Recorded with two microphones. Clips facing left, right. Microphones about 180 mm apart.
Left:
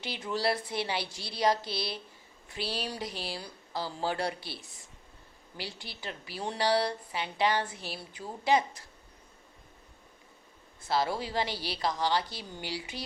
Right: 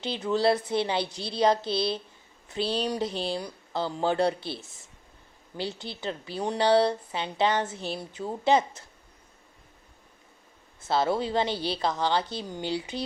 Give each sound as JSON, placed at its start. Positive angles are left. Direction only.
{"t": 0.0, "sound": "a woman's voice", "side_deg": -25}
{"t": 10.8, "sound": "a woman's voice", "side_deg": -25}